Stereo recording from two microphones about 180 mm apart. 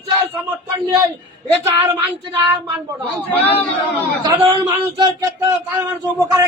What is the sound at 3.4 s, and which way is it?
Speech, 10° left (ahead or behind).